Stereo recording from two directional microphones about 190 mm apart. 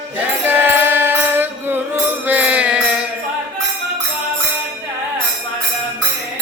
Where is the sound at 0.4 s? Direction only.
10° right (ahead or behind).